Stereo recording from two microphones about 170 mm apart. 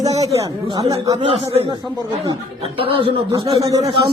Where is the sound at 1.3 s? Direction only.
35° right (ahead or behind).